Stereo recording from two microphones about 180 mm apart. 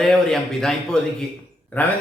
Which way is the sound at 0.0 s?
5° left (ahead or behind).